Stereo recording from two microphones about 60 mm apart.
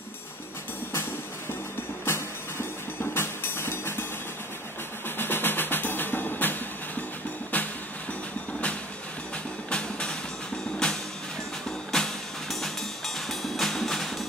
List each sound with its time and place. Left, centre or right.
2.0 s a sound: left
3.2 s music: left
5.0 s music: left
8.1 s vehicle: left
9.7 s music: centre